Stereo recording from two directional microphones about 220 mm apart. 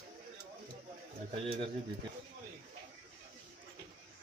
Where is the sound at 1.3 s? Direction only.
25° right (ahead or behind).